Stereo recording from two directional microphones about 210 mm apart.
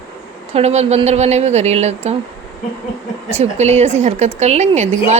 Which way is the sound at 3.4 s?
30° right (ahead or behind).